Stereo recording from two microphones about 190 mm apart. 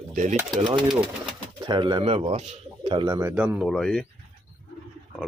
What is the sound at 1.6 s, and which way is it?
Speech, 25° right (ahead or behind).